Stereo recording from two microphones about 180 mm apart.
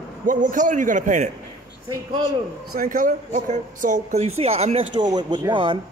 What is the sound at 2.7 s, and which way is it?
Speech, 50° right (ahead or behind).